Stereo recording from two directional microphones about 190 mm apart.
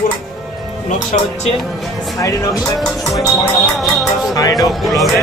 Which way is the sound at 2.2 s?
20° left (ahead or behind).